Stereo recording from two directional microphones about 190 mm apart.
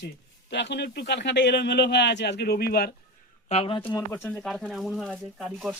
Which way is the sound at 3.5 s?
30° left (ahead or behind).